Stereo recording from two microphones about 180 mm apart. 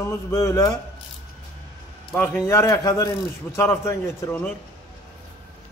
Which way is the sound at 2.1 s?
5° left (ahead or behind).